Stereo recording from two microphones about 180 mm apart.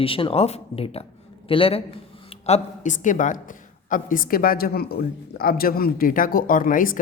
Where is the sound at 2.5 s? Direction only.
45° left (ahead or behind).